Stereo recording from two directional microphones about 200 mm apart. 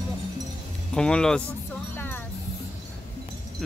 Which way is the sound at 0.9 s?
5° left (ahead or behind).